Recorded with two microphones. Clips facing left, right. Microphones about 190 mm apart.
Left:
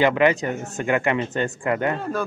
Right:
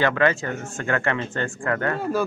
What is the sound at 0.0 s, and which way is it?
Speech, 15° left (ahead or behind).